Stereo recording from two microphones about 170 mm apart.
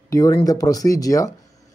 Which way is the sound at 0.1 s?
20° left (ahead or behind).